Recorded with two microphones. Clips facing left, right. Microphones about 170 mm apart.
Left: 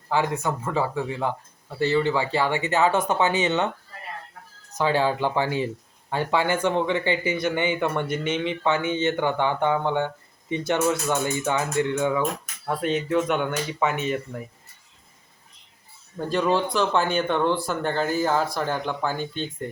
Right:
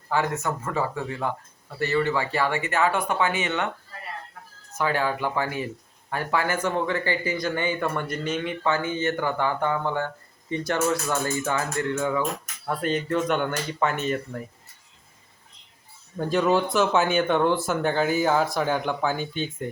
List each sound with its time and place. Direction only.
0.1 s speech: 15° left (ahead or behind)
4.8 s speech: 25° left (ahead or behind)
12.6 s speech: centre (ahead or behind)
16.1 s speech: centre (ahead or behind)